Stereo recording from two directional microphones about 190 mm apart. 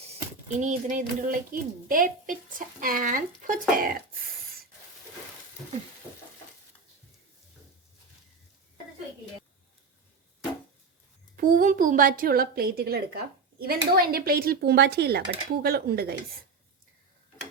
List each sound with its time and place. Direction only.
0.6 s a woman's voice: 40° right (ahead or behind)
6.0 s a sound: 10° right (ahead or behind)
11.3 s a woman's voice: 45° right (ahead or behind)